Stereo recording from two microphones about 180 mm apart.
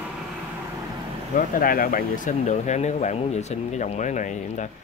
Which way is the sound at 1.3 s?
50° left (ahead or behind).